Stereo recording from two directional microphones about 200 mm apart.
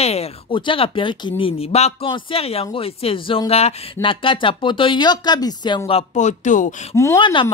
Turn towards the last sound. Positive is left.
turn(degrees=15)  # may be behind; listen again after turning